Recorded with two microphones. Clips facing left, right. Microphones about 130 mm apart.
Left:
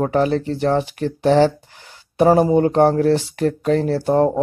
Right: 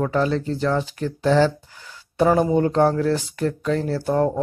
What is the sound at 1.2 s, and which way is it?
Speech, 20° left (ahead or behind).